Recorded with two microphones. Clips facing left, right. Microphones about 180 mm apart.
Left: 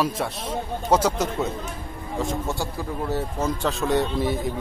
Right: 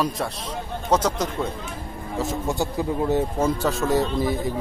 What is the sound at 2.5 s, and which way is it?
Speech, 20° right (ahead or behind).